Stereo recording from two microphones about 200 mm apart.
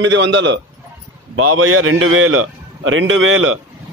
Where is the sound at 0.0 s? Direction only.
65° right (ahead or behind).